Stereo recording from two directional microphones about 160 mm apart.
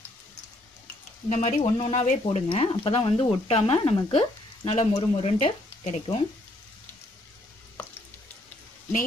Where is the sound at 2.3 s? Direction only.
35° left (ahead or behind).